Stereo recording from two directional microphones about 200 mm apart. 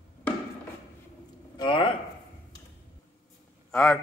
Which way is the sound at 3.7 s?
5° left (ahead or behind).